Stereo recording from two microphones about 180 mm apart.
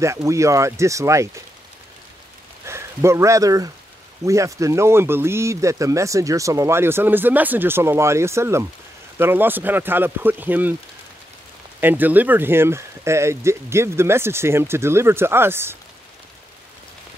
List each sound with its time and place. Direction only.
0.0 s speech: 15° right (ahead or behind)
2.6 s speech: 15° right (ahead or behind)
11.8 s speech: 10° right (ahead or behind)